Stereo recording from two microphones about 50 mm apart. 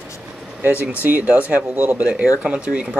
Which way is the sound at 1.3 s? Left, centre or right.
Right.